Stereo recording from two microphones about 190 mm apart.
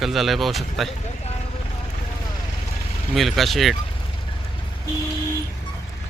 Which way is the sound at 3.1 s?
Centre (ahead or behind).